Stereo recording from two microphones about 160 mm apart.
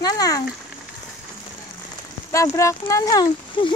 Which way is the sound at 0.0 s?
25° left (ahead or behind).